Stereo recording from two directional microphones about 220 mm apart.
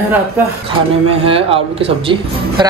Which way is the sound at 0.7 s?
25° right (ahead or behind).